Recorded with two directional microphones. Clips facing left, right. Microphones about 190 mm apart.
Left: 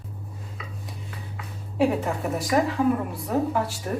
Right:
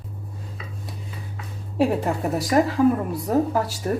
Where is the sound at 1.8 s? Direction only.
35° right (ahead or behind).